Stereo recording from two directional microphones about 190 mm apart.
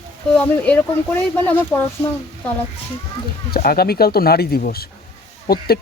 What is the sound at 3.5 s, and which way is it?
Speech, 55° left (ahead or behind).